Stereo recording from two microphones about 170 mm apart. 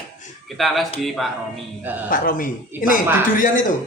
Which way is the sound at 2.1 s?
55° left (ahead or behind).